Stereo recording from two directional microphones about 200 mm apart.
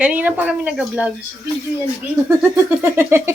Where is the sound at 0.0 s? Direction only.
5° right (ahead or behind).